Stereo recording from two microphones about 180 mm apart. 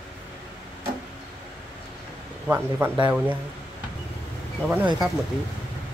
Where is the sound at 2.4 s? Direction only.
10° right (ahead or behind).